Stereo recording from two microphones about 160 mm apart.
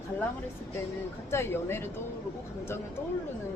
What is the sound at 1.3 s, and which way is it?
Speech, 15° left (ahead or behind).